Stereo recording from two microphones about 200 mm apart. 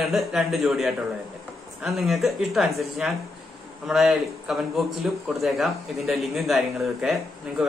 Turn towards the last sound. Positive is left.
turn(degrees=0)  # may be behind; listen again after turning